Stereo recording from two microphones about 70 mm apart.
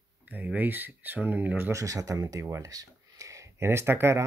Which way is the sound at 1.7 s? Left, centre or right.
Right.